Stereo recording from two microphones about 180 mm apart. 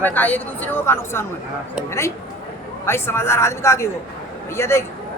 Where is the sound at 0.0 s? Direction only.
10° left (ahead or behind).